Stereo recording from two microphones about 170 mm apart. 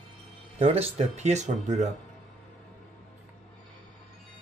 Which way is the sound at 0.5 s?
40° right (ahead or behind).